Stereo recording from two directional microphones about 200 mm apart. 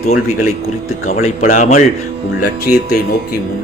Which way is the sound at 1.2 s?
45° left (ahead or behind).